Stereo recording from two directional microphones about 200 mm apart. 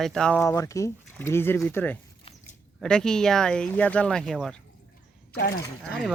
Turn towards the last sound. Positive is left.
turn(degrees=0)  # may be behind; listen again after turning